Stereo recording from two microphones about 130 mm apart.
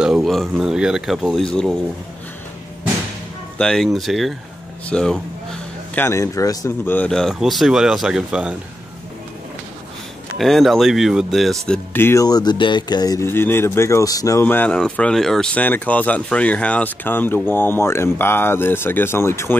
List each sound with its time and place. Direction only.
0.0 s speech: centre (ahead or behind)
3.5 s speech: 5° left (ahead or behind)
5.9 s speech: 20° left (ahead or behind)
6.9 s speech: 10° left (ahead or behind); by 8.5 s 10° right (ahead or behind)
10.3 s speech: centre (ahead or behind)
11.9 s speech: 20° left (ahead or behind)
12.3 s speech: 30° left (ahead or behind)
13.3 s speech: 15° left (ahead or behind)